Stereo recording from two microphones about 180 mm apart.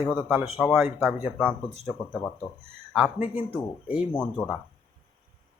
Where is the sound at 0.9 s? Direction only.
10° right (ahead or behind).